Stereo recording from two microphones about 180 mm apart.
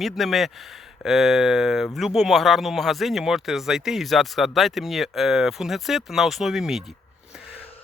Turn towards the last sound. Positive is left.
turn(degrees=0)  # may be behind; listen again after turning